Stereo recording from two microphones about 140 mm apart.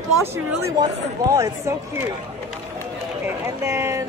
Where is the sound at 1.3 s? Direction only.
20° right (ahead or behind).